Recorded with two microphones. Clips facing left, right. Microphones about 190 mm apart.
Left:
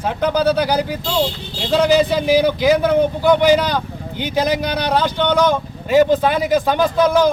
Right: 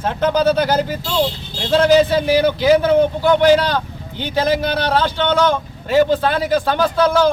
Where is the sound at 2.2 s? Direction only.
10° left (ahead or behind).